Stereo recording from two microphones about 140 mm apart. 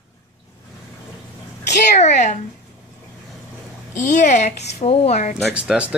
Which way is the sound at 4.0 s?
60° left (ahead or behind).